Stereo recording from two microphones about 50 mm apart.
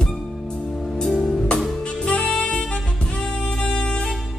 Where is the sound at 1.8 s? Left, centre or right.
Left.